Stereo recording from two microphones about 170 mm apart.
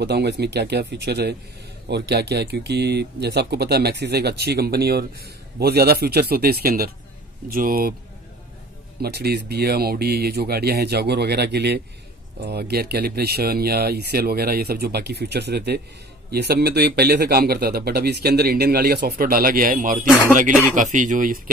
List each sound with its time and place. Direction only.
0.0 s speech: 80° right; by 7.9 s 55° right (ahead or behind)
9.0 s speech: 70° right (ahead or behind); by 21.4 s 50° right (ahead or behind)